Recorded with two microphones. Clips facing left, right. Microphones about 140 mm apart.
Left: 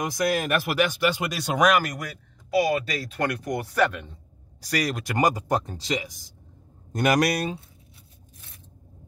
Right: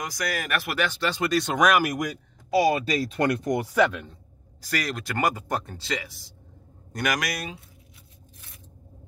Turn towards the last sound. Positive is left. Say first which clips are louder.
# left 7 dB
turn(degrees=35)  # may be behind; listen again after turning